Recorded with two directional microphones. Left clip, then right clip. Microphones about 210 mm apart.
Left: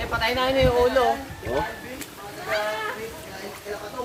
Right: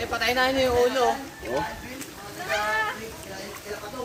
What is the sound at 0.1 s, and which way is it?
Speech, 45° right (ahead or behind).